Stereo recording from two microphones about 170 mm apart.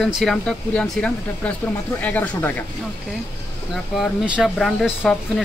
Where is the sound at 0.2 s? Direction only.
5° left (ahead or behind).